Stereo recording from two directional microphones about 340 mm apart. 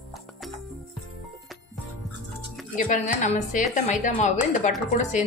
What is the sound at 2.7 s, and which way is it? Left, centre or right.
A woman's voice, left.